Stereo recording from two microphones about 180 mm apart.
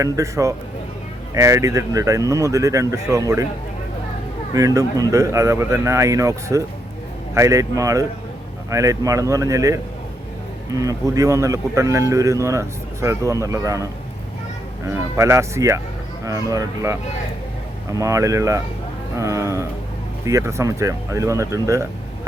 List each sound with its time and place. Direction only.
0.0 s speech: 15° right (ahead or behind)
4.5 s speech: 20° right (ahead or behind)
14.8 s speech: 15° right (ahead or behind)